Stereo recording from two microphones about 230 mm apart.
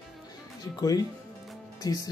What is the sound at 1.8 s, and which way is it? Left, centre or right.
Speech, centre.